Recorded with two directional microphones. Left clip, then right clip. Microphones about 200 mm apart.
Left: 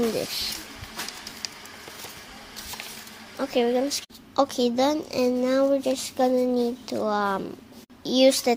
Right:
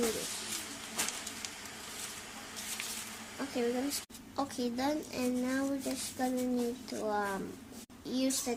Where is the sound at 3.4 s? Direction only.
35° left (ahead or behind).